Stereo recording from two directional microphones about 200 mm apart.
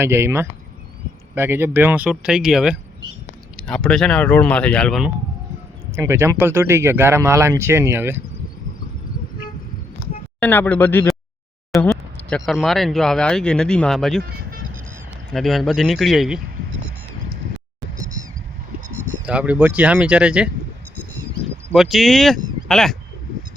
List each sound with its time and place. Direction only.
0.0 s speech: 10° right (ahead or behind)
6.0 s speech: 15° right (ahead or behind)
10.4 s speech: 10° left (ahead or behind)
14.3 s vehicle: 45° right (ahead or behind)
15.3 s speech: centre (ahead or behind)
19.2 s speech: 5° right (ahead or behind)
21.7 s speech: centre (ahead or behind)